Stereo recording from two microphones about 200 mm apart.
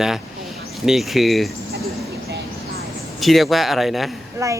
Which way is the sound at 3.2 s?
Centre (ahead or behind).